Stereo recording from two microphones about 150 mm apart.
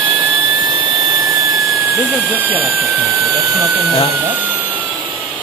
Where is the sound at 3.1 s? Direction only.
15° right (ahead or behind).